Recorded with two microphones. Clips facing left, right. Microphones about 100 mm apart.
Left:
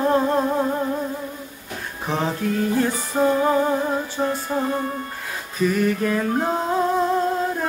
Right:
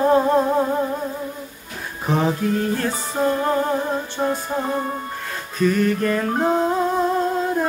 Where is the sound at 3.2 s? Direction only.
15° left (ahead or behind).